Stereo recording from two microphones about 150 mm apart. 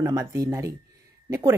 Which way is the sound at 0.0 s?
20° right (ahead or behind).